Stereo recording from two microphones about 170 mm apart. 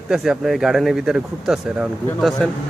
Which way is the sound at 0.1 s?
Centre (ahead or behind).